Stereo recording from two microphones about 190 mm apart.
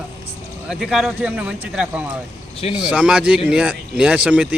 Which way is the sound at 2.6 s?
20° left (ahead or behind).